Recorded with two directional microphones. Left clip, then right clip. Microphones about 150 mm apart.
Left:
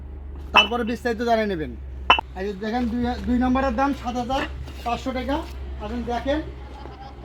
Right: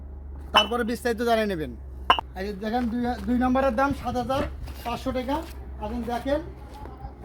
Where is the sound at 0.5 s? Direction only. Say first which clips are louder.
Left 3 dB; 20° right (ahead or behind); by 1.7 s 35° right (ahead or behind).